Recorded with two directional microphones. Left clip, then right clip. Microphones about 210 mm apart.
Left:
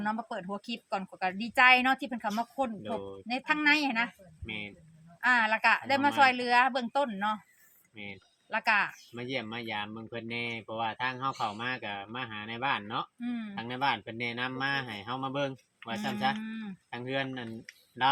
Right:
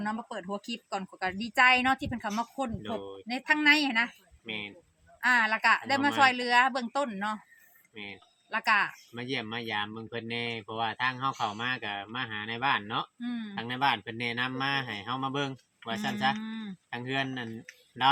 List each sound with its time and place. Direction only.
0.0 s a woman's voice: 5° left (ahead or behind)
2.8 s speech: 40° right (ahead or behind)
3.2 s a woman's voice: centre (ahead or behind)
4.4 s speech: 40° right (ahead or behind)
5.2 s a woman's voice: centre (ahead or behind)
8.4 s a woman's voice: centre (ahead or behind)
9.1 s speech: 40° right (ahead or behind)
13.1 s speech: centre (ahead or behind)
13.6 s speech: 40° right (ahead or behind)
16.4 s a woman's voice: 5° right (ahead or behind)
16.9 s speech: 40° right (ahead or behind)